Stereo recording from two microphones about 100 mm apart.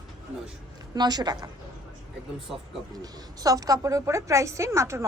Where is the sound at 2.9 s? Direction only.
40° right (ahead or behind).